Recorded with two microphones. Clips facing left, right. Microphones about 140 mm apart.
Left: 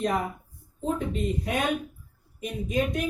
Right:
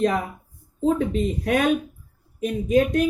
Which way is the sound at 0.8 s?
90° right.